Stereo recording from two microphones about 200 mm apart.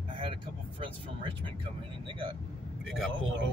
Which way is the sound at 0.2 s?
25° right (ahead or behind).